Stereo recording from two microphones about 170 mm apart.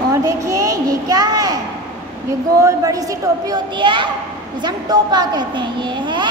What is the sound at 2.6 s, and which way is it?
A child's voice, 20° right (ahead or behind).